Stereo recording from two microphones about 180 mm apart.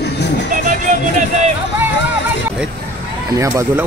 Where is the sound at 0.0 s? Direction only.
70° left (ahead or behind).